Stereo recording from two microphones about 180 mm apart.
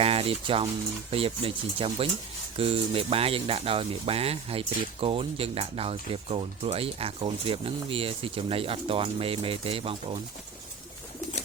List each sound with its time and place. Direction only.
0.0 s speech: 30° right (ahead or behind)